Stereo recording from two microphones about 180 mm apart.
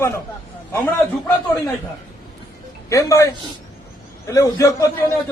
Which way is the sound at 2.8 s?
15° left (ahead or behind).